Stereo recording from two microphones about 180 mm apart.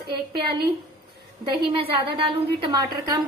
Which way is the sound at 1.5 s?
30° right (ahead or behind).